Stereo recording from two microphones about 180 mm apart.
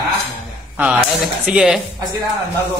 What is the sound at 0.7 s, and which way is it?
Speech, 5° right (ahead or behind).